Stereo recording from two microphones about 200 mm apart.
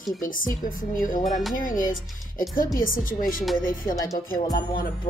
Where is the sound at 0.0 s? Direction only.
40° left (ahead or behind).